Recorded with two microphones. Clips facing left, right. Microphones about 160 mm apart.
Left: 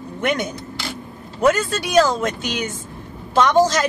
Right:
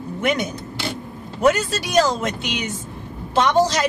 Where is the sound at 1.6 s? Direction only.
50° left (ahead or behind).